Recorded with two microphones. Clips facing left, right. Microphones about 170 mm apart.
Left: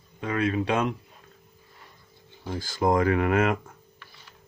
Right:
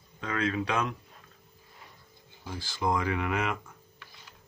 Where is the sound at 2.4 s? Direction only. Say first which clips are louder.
Left 6 dB; 45° left (ahead or behind).